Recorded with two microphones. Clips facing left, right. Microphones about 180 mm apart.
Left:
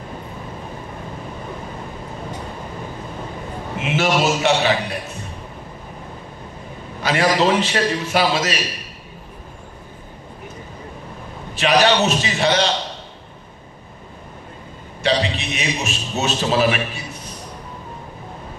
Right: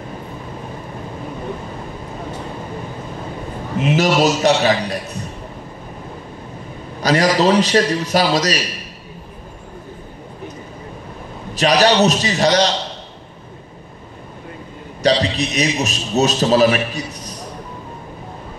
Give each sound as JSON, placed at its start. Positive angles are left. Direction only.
{"t": 3.8, "sound": "a man's voice", "side_deg": -40}
{"t": 7.0, "sound": "a man's voice", "side_deg": -40}
{"t": 11.5, "sound": "a man's voice", "side_deg": -40}
{"t": 15.0, "sound": "a man's voice", "side_deg": -40}